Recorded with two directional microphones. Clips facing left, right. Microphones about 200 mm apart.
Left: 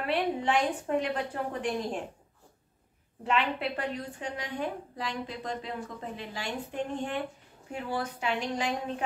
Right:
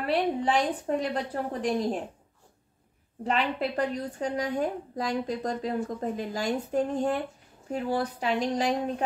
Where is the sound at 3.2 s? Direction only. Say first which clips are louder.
Right 2 dB; 40° right (ahead or behind).